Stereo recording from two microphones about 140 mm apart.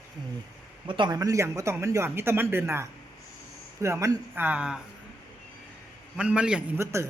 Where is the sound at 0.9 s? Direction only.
35° right (ahead or behind); by 4.8 s 5° right (ahead or behind).